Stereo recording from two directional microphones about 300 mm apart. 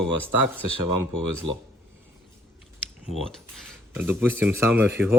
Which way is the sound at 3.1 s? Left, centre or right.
Centre.